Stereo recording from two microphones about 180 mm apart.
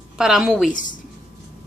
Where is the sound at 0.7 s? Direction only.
45° left (ahead or behind).